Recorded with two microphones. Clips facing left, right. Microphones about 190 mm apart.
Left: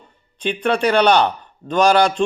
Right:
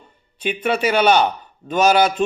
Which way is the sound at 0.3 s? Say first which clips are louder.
Left 1 dB; 5° right (ahead or behind).